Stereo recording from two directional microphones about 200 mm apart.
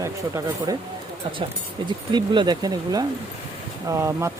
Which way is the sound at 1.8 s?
20° right (ahead or behind).